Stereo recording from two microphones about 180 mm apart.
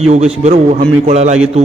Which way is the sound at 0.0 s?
35° right (ahead or behind).